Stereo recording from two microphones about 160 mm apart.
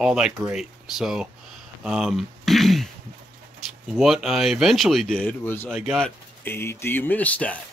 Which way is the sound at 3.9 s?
5° right (ahead or behind).